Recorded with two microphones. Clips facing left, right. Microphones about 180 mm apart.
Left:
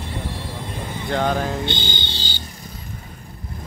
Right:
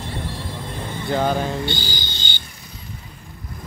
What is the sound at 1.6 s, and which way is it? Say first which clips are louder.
Music: left 1 dB; 20° left (ahead or behind).